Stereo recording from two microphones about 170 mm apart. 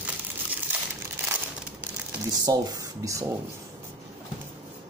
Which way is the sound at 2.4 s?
20° right (ahead or behind).